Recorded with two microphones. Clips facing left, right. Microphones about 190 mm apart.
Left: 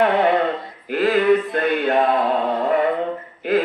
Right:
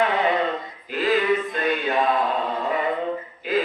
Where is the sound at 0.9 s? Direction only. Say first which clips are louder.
Left 5 dB; 55° left (ahead or behind).